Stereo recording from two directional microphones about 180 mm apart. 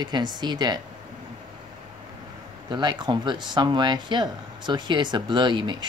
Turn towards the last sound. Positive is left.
turn(degrees=-25)  # may be behind; listen again after turning